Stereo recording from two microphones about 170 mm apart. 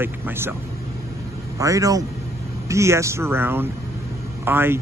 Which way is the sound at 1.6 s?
20° right (ahead or behind).